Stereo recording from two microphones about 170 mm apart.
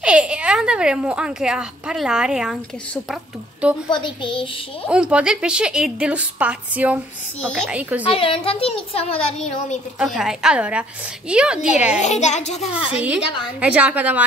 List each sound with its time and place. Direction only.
0.0 s speech: 5° right (ahead or behind)
3.9 s a child's voice: 30° left (ahead or behind)
4.8 s speech: 5° right (ahead or behind)
8.1 s speech: 30° left (ahead or behind)
9.9 s speech: 5° right (ahead or behind)
12.0 s a child's voice: 45° left (ahead or behind)
12.7 s a woman's voice: 5° right (ahead or behind)